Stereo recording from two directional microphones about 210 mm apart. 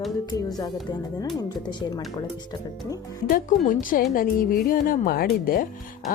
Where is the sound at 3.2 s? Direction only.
40° left (ahead or behind).